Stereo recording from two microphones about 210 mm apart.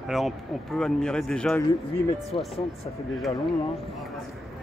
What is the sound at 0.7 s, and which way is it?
Speech, 5° left (ahead or behind).